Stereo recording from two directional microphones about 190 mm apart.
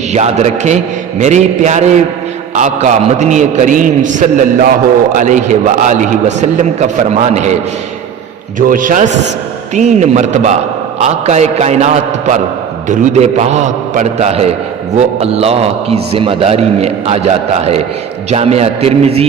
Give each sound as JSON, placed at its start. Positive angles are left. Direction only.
{"t": 0.1, "sound": "a man's voice", "side_deg": -35}
{"t": 8.5, "sound": "a man's voice", "side_deg": -45}